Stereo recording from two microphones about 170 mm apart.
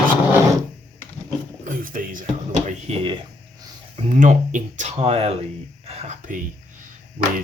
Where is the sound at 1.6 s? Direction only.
50° right (ahead or behind); by 3.2 s 35° right (ahead or behind).